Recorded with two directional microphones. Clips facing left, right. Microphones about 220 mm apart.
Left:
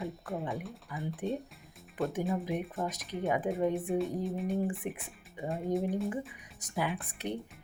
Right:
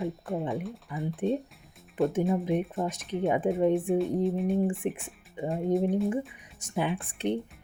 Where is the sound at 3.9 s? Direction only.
Centre (ahead or behind).